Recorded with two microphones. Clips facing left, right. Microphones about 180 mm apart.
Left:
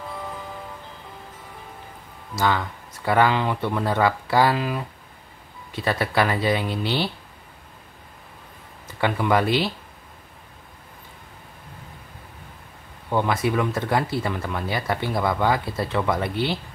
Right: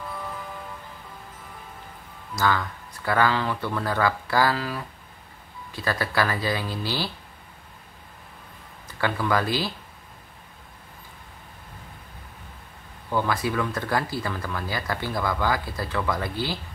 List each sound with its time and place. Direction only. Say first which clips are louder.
2.3 s speech: left 2 dB; 20° left (ahead or behind)
9.0 s speech: left 4 dB; 20° left (ahead or behind)
13.1 s speech: left 3 dB; 20° left (ahead or behind)